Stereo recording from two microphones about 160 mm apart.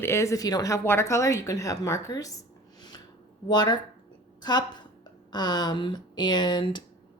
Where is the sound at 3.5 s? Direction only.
25° left (ahead or behind).